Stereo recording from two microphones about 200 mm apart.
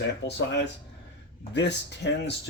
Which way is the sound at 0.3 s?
60° left (ahead or behind).